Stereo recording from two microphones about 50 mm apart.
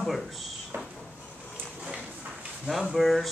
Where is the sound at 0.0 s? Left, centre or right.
Centre.